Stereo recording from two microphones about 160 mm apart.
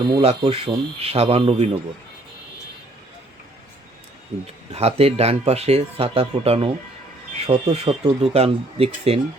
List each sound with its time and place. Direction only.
0.2 s speech: 35° right (ahead or behind)
4.3 s speech: 45° right (ahead or behind)